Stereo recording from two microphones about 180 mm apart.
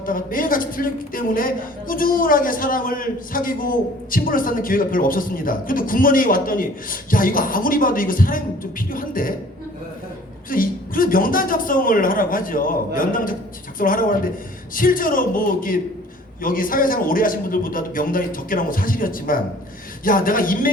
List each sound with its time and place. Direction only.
0.0 s a man's voice: 50° left (ahead or behind)
10.5 s a man's voice: 50° left (ahead or behind)